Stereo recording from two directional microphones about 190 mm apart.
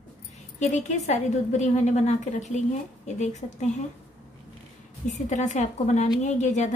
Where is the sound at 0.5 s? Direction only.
40° left (ahead or behind).